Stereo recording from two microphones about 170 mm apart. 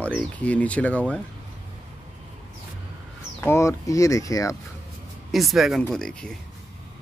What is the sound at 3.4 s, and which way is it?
Speech, 15° left (ahead or behind).